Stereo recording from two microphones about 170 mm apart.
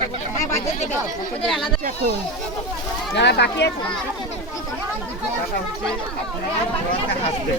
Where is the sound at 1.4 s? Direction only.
Centre (ahead or behind).